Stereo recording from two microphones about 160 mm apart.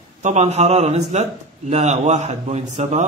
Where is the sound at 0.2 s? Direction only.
45° right (ahead or behind).